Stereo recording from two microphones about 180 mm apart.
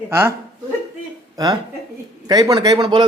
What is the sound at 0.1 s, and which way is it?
Speech, 15° right (ahead or behind).